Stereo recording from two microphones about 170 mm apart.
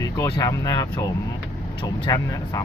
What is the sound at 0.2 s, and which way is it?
Speech, 20° left (ahead or behind).